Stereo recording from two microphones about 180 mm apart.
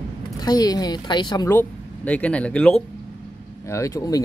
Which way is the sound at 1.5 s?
10° left (ahead or behind).